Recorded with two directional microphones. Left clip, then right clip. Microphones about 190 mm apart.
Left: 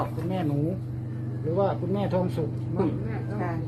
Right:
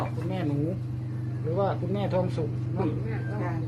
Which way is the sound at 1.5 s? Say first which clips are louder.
Left 2 dB; 40° left (ahead or behind).